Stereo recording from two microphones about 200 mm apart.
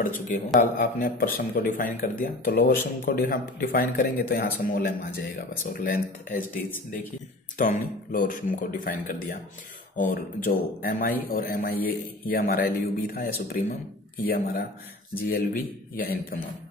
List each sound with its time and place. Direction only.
0.6 s speech: 45° left (ahead or behind)
7.5 s speech: 40° left (ahead or behind)